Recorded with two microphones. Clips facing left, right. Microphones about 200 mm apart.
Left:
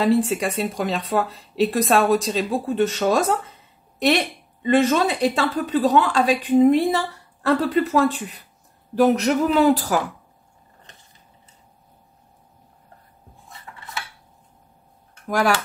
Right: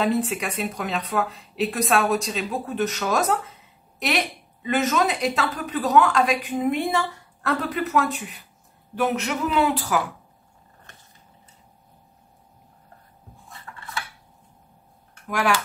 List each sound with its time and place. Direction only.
0.0 s speech: 30° left (ahead or behind)
13.7 s cutlery: 15° left (ahead or behind)
15.2 s speech: 40° left (ahead or behind)